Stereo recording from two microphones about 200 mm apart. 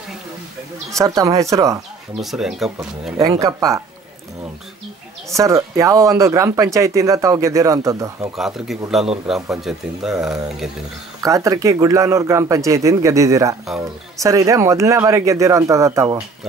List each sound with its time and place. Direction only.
0.9 s speech: 15° right (ahead or behind)
2.3 s speech: centre (ahead or behind)
3.2 s speech: 15° right (ahead or behind)
5.3 s speech: 15° right (ahead or behind)
8.4 s speech: centre (ahead or behind)
11.2 s speech: 15° right (ahead or behind)